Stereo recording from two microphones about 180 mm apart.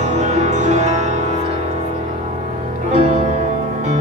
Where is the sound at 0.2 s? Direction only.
40° right (ahead or behind).